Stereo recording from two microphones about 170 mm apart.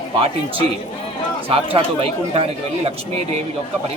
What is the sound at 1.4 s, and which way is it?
Speech, 35° right (ahead or behind).